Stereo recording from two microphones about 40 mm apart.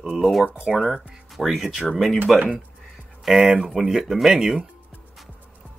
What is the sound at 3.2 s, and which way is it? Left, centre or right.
Speech, centre.